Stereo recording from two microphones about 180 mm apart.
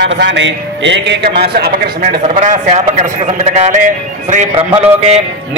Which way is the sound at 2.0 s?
40° right (ahead or behind).